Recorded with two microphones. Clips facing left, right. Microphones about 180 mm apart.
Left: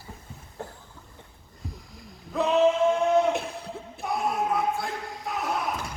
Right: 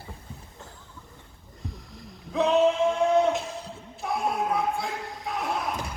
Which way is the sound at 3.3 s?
60° left (ahead or behind).